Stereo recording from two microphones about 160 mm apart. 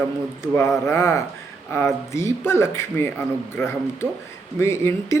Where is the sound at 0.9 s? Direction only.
20° left (ahead or behind).